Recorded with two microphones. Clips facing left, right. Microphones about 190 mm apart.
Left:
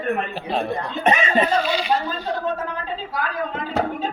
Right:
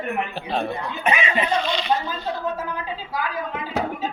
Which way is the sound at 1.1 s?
45° left (ahead or behind).